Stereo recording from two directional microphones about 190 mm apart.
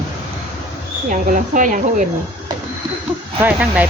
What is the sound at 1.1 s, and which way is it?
Speech, 45° right (ahead or behind).